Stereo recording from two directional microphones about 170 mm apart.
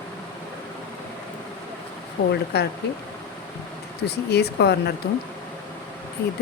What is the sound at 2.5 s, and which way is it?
Speech, 75° left (ahead or behind).